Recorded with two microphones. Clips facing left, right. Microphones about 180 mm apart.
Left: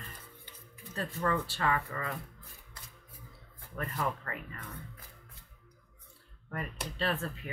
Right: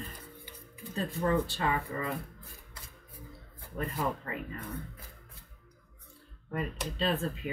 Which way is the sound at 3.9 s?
15° right (ahead or behind).